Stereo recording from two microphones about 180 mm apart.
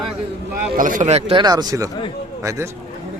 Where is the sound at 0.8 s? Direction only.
45° right (ahead or behind); by 2.6 s 15° right (ahead or behind).